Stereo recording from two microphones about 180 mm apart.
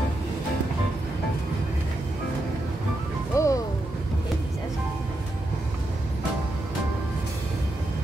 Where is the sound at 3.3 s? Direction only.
15° left (ahead or behind).